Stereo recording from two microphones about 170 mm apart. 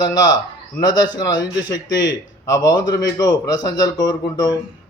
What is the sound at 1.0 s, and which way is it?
A man's voice, 25° left (ahead or behind).